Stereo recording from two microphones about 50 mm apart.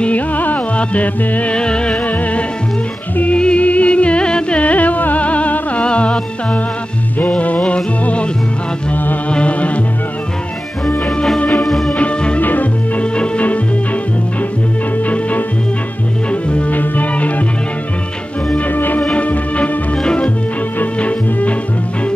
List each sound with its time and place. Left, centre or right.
0.0 s music: left
1.6 s music: centre
3.3 s music: left
9.3 s music: left
11.3 s music: left
11.6 s music: centre
11.9 s music: left
12.4 s music: left
13.0 s music: left
15.0 s music: left
18.7 s music: left
19.1 s music: left
20.0 s music: centre
20.8 s music: left